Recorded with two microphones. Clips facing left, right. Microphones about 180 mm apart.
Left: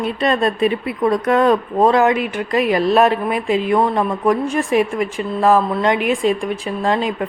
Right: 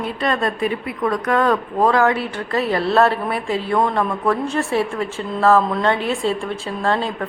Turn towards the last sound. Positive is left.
turn(degrees=15)  # may be behind; listen again after turning